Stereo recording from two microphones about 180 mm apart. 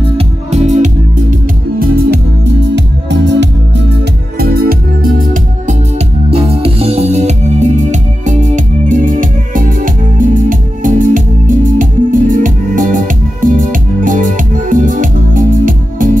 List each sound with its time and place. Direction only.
0.2 s music: 40° right (ahead or behind)
2.7 s music: 80° right
4.4 s music: 55° right (ahead or behind)